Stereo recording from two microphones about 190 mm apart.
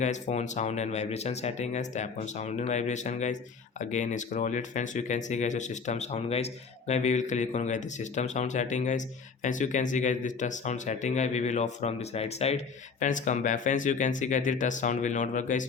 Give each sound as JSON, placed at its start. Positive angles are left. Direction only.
{"t": 0.0, "sound": "speech", "side_deg": 40}